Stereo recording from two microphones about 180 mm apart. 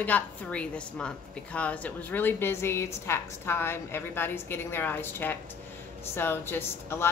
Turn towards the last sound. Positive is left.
turn(degrees=15)  # may be behind; listen again after turning